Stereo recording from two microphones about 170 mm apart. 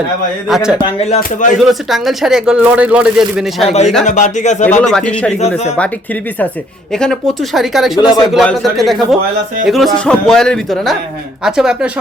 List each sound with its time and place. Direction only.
0.4 s speech: 5° right (ahead or behind)
1.1 s speech: 50° left (ahead or behind)
1.5 s speech: centre (ahead or behind)
3.7 s speech: 40° left (ahead or behind)
4.8 s a man's voice: 5° left (ahead or behind)
6.9 s speech: 5° left (ahead or behind)
7.9 s speech: 25° left (ahead or behind)
8.3 s speech: centre (ahead or behind)